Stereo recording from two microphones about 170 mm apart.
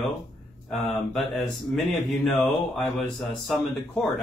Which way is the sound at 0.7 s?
Centre (ahead or behind).